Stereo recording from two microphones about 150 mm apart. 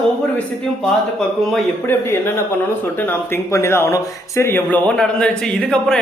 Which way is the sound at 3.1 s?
20° left (ahead or behind).